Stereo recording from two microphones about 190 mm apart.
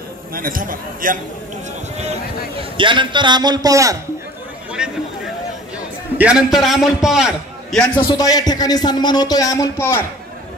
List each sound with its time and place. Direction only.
0.3 s a man's voice: 50° right (ahead or behind)
2.8 s a man's voice: 25° right (ahead or behind)
4.8 s a sound: 5° right (ahead or behind)
6.1 s a man's voice: 5° right (ahead or behind)
7.9 s speech: 20° left (ahead or behind)